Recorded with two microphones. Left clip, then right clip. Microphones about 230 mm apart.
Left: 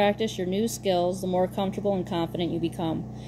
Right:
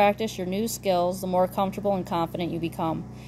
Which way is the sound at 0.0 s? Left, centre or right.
Right.